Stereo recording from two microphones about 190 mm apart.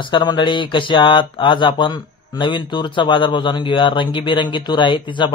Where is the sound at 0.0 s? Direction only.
25° left (ahead or behind).